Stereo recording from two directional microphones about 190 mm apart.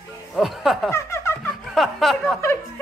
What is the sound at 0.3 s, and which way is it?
Speech, centre (ahead or behind).